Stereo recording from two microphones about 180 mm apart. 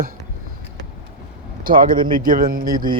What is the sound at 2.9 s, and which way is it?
Speech, 25° right (ahead or behind).